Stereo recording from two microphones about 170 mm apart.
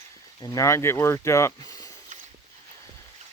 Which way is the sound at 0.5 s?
15° left (ahead or behind).